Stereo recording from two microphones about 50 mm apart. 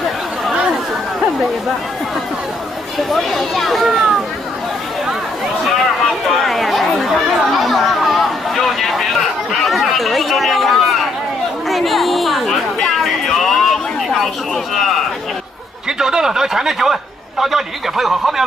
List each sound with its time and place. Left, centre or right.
3.1 s speech: centre
6.3 s chatter: centre
11.7 s music: centre
16.0 s speech: centre